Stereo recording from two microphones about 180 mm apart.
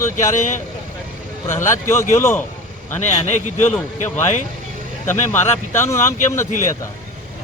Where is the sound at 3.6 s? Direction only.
10° left (ahead or behind).